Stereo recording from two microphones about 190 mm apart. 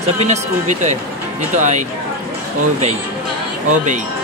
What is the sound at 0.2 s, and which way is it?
Speech, 35° right (ahead or behind).